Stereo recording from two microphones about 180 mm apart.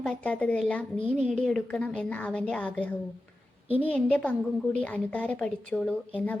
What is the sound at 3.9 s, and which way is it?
A woman's voice, 5° left (ahead or behind).